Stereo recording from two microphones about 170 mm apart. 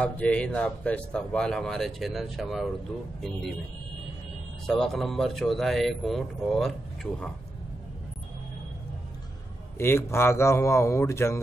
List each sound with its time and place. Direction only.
0.0 s speech: 5° left (ahead or behind)
4.6 s speech: centre (ahead or behind)
9.8 s a man's voice: 15° left (ahead or behind)